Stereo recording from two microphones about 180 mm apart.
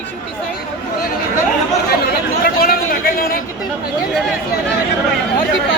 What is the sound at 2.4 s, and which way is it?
Speech, 55° left (ahead or behind).